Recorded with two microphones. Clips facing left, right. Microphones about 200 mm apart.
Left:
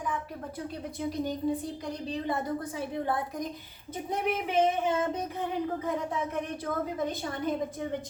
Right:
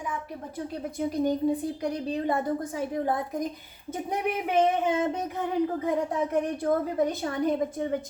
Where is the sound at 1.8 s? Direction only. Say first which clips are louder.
Right 5 dB; 55° right (ahead or behind).